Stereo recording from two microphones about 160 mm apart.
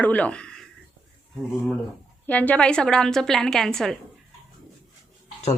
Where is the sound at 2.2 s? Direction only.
10° left (ahead or behind).